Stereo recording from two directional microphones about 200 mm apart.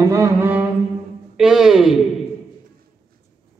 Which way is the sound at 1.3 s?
5° right (ahead or behind).